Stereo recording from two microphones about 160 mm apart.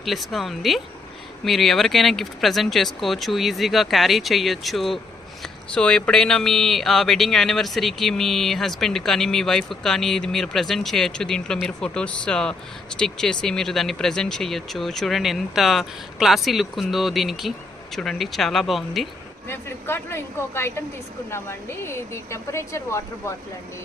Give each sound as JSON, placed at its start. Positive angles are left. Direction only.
{"t": 0.0, "sound": "speech", "side_deg": 0}
{"t": 19.5, "sound": "speech", "side_deg": 15}